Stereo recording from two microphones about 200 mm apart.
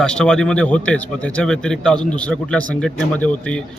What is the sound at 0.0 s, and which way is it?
Speech, 5° left (ahead or behind).